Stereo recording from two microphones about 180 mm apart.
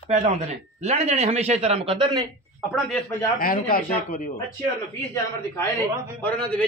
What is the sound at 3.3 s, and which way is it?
Speech, 50° left (ahead or behind).